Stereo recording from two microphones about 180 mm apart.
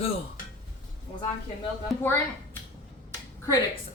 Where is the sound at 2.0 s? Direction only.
10° left (ahead or behind).